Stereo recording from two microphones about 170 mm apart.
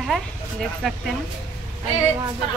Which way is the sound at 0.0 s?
Centre (ahead or behind).